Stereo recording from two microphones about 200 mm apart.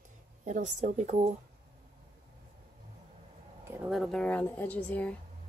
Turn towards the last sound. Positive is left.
turn(degrees=5)  # may be behind; listen again after turning